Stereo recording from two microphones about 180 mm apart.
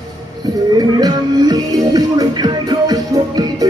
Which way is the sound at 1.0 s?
20° right (ahead or behind).